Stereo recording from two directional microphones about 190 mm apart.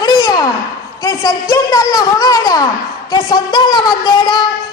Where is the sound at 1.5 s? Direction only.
20° left (ahead or behind).